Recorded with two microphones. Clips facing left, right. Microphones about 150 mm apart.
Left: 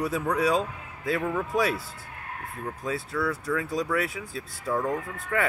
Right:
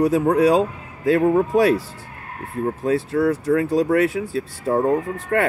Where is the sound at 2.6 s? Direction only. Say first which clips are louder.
Right 11 dB; 45° right (ahead or behind).